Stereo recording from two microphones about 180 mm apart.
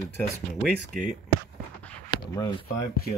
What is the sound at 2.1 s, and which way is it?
Speech, 25° left (ahead or behind).